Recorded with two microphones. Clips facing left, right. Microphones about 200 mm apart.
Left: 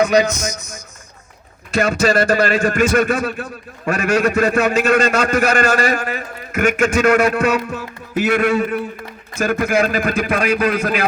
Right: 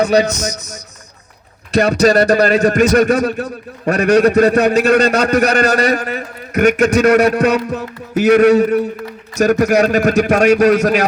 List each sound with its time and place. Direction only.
0.0 s a man's voice: 35° right (ahead or behind)
1.7 s a man's voice: 40° right (ahead or behind)